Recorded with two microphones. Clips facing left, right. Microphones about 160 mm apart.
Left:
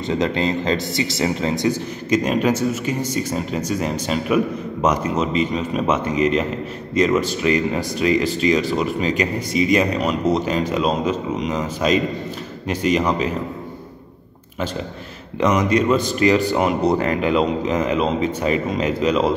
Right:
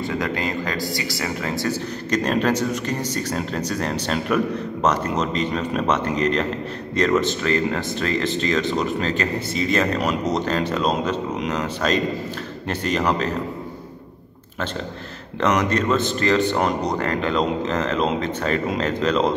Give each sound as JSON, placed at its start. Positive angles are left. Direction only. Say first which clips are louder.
{"t": 0.1, "sound": "speech", "louder": "left 9 dB", "side_deg": 25}
{"t": 15.4, "sound": "speech", "louder": "left 3 dB", "side_deg": 10}